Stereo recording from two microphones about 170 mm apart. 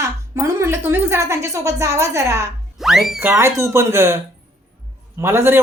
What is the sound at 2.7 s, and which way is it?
A woman's voice, centre (ahead or behind).